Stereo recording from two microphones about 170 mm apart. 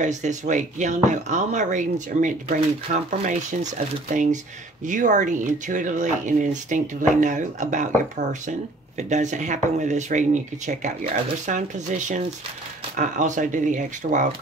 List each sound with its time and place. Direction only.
0.0 s speech: 45° right (ahead or behind)